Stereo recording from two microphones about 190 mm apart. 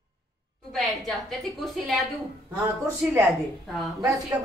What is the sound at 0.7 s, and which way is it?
A woman's voice, centre (ahead or behind).